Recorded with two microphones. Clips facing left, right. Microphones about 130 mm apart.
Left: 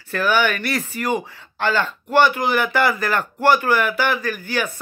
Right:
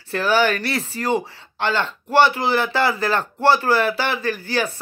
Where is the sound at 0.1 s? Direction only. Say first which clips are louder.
Right 1 dB; 30° right (ahead or behind).